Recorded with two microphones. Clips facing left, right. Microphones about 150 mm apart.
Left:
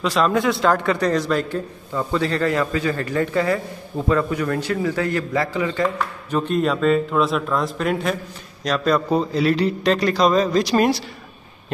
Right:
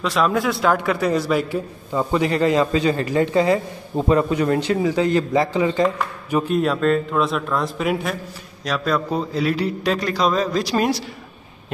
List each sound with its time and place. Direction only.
0.0 s a man's voice: centre (ahead or behind); by 5.9 s 20° right (ahead or behind)
5.9 s a man's voice: 5° right (ahead or behind)